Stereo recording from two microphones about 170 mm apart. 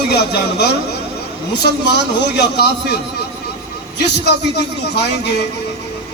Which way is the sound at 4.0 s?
80° left.